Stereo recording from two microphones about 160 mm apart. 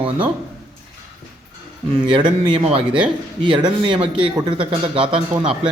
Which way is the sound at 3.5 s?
30° right (ahead or behind).